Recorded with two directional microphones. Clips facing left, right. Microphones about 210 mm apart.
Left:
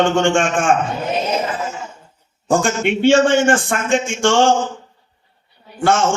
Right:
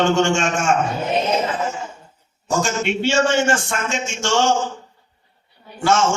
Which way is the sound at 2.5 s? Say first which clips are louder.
Left 4 dB; 55° left (ahead or behind).